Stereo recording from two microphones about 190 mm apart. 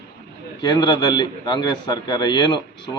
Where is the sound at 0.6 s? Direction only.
20° left (ahead or behind).